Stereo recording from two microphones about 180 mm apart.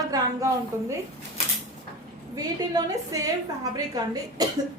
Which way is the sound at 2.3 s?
20° right (ahead or behind).